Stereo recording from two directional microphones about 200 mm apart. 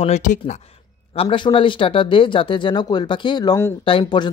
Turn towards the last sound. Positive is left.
turn(degrees=25)  # may be behind; listen again after turning